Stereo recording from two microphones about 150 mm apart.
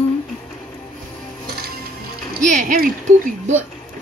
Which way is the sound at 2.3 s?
60° right (ahead or behind).